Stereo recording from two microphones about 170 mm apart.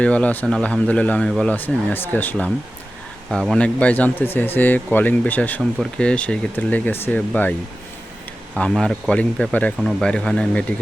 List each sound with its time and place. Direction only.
0.0 s speech: 5° left (ahead or behind)
3.2 s speech: centre (ahead or behind)
8.5 s speech: 5° left (ahead or behind)